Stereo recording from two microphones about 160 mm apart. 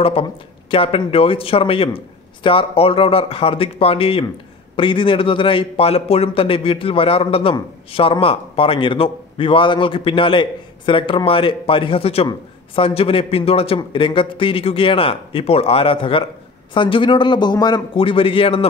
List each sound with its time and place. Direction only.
0.0 s speech: 35° left (ahead or behind)